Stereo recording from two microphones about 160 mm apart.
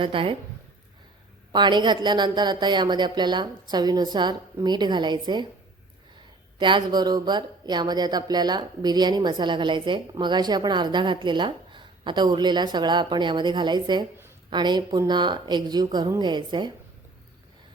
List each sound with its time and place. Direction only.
0.0 s a woman's voice: 35° right (ahead or behind)
1.5 s speech: 30° right (ahead or behind)
6.6 s speech: 30° right (ahead or behind)